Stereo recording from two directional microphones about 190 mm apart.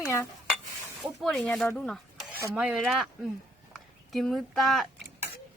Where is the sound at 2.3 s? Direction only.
10° right (ahead or behind).